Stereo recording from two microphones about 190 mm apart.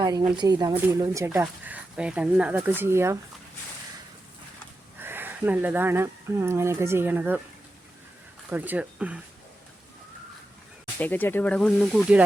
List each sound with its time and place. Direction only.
0.0 s speech: 20° right (ahead or behind)
0.7 s speech: 10° right (ahead or behind)
4.9 s speech: 10° right (ahead or behind)
8.4 s speech: 10° right (ahead or behind)
11.0 s speech: 10° left (ahead or behind)